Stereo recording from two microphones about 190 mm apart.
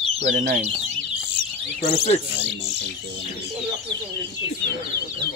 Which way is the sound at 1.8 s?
30° left (ahead or behind).